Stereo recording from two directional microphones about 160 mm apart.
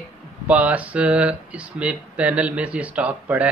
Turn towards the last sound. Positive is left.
turn(degrees=-10)  # may be behind; listen again after turning